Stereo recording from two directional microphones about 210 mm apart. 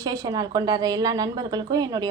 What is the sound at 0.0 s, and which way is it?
A woman's voice, 15° right (ahead or behind).